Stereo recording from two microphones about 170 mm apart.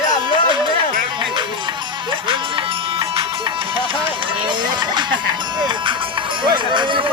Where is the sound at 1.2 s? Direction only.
30° right (ahead or behind).